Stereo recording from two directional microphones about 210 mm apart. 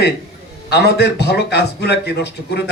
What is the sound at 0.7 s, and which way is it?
A man's voice, 50° left (ahead or behind).